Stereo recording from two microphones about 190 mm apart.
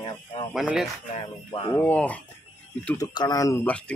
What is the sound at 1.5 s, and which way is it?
Speech, 25° left (ahead or behind).